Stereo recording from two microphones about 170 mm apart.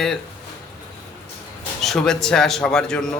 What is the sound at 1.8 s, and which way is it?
A man's voice, 5° left (ahead or behind).